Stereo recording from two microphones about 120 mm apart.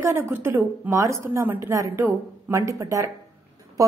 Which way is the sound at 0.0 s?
20° right (ahead or behind).